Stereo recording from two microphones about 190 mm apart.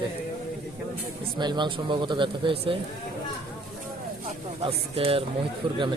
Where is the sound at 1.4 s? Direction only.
25° right (ahead or behind).